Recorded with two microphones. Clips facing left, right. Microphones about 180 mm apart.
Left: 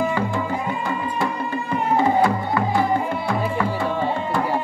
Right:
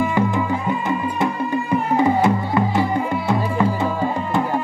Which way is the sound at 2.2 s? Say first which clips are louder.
Right 2 dB; 20° right (ahead or behind).